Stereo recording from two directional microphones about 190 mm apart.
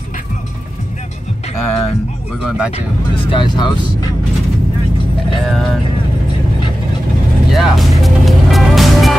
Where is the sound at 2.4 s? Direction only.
5° right (ahead or behind).